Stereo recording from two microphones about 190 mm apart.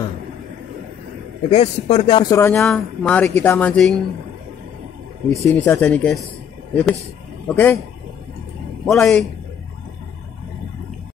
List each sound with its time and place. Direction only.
1.5 s speech: 35° left (ahead or behind)
2.5 s speech: 5° left (ahead or behind)
5.4 s speech: 10° left (ahead or behind)
8.8 s speech: centre (ahead or behind)